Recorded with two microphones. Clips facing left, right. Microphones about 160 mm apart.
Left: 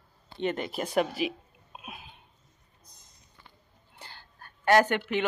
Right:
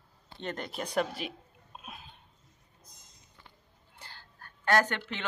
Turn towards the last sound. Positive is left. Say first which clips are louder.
# left 5 dB
turn(degrees=15)  # may be behind; listen again after turning